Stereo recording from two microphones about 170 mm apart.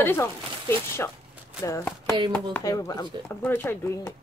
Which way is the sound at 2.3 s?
15° left (ahead or behind).